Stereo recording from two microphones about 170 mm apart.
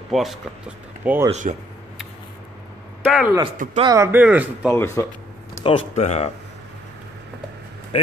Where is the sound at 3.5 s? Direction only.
50° right (ahead or behind).